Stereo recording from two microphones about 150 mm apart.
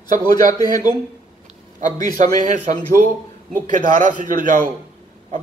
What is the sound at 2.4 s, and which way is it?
Speech, 60° right (ahead or behind).